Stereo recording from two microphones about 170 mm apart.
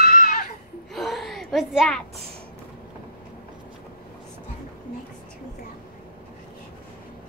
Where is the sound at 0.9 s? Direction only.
Centre (ahead or behind).